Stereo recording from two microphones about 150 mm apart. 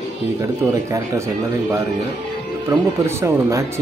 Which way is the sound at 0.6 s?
20° right (ahead or behind).